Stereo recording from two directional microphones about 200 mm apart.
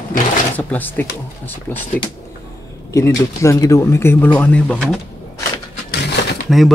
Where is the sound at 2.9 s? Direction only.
15° left (ahead or behind).